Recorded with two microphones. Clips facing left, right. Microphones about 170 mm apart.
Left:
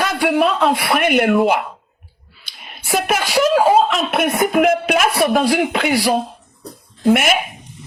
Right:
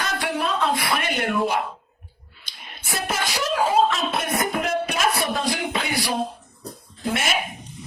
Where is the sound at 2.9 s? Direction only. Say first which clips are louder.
Left 8 dB; 80° left.